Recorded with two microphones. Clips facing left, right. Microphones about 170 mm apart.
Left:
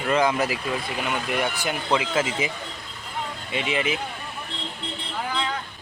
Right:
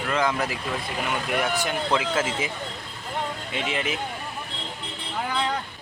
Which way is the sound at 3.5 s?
5° left (ahead or behind).